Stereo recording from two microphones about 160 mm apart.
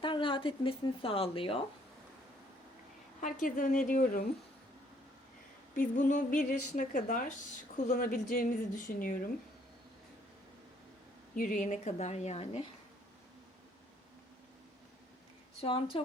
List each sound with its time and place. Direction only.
0.0 s speech: 30° left (ahead or behind)
3.2 s a woman's voice: 55° left (ahead or behind)
5.7 s a woman's voice: 55° left (ahead or behind)
11.3 s a woman's voice: 55° left (ahead or behind); by 12.6 s 40° left (ahead or behind)
15.6 s a woman's voice: 35° left (ahead or behind)